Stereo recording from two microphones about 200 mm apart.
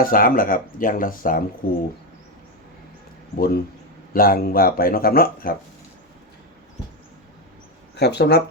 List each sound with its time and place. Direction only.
0.0 s speech: 45° left (ahead or behind)
3.3 s speech: 50° left (ahead or behind)
7.9 s speech: 55° left (ahead or behind)